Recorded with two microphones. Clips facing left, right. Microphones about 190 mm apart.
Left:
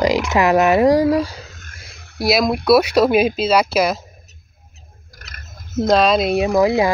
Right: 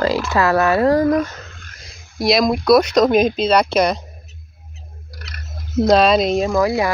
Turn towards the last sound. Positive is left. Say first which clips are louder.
# left 2 dB
turn(degrees=20)  # may be behind; listen again after turning